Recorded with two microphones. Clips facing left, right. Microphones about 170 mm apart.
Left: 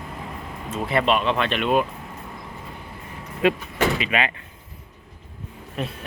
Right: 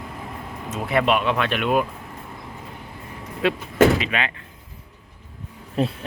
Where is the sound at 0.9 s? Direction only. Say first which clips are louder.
Right 1 dB; 5° right (ahead or behind).